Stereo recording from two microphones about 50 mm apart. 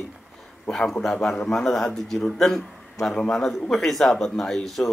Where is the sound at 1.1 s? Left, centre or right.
Centre.